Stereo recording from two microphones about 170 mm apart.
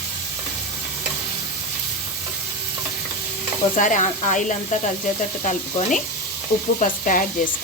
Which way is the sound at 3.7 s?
45° left (ahead or behind).